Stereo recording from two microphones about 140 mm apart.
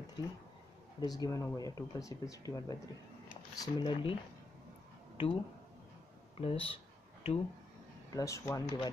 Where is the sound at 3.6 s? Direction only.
35° left (ahead or behind).